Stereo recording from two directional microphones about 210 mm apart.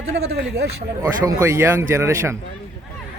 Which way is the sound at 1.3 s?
15° right (ahead or behind).